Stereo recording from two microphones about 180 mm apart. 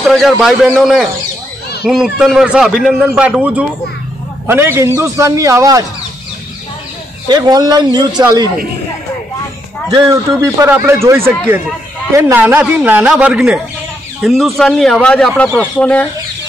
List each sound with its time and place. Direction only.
0.0 s a man's voice: centre (ahead or behind); by 5.9 s 20° right (ahead or behind)
7.2 s a man's voice: 20° right (ahead or behind)
9.8 s a man's voice: 20° right (ahead or behind); by 16.1 s 10° left (ahead or behind)